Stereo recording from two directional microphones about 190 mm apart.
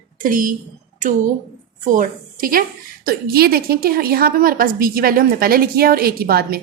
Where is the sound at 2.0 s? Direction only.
50° right (ahead or behind).